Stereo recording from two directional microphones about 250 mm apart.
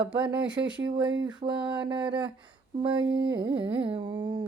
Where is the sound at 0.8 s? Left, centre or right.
Centre.